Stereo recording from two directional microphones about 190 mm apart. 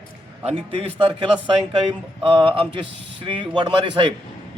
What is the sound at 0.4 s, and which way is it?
Speech, 30° right (ahead or behind).